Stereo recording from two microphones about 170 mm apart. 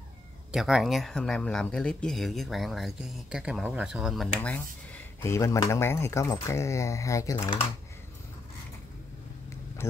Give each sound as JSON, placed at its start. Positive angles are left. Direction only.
{"t": 0.5, "sound": "speech", "side_deg": 0}
{"t": 4.9, "sound": "speech", "side_deg": 15}
{"t": 7.3, "sound": "speech", "side_deg": 30}